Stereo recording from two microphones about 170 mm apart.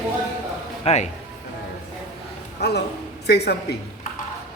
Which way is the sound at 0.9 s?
40° left (ahead or behind).